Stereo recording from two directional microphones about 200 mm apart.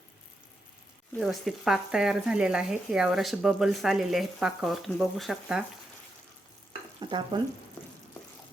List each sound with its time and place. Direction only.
1.2 s speech: centre (ahead or behind)
7.0 s speech: 20° right (ahead or behind)